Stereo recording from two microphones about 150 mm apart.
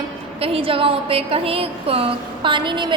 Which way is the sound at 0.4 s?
40° right (ahead or behind).